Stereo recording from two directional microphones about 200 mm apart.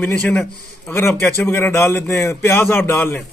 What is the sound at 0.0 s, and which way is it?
A man's voice, 10° left (ahead or behind).